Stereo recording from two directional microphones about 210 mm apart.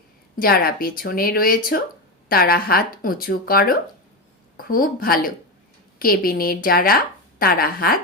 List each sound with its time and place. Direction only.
0.3 s a woman's voice: 45° left (ahead or behind)